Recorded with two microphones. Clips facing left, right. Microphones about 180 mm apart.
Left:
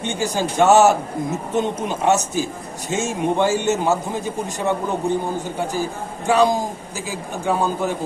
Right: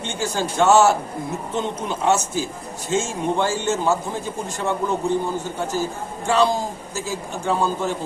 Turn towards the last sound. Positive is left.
turn(degrees=15)  # may be behind; listen again after turning